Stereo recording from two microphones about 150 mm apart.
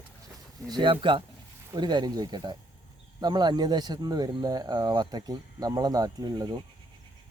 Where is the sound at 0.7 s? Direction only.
30° right (ahead or behind).